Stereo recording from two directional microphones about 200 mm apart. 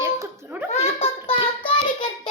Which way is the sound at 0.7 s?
30° left (ahead or behind).